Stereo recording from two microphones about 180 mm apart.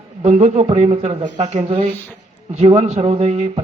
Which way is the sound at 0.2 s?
35° right (ahead or behind).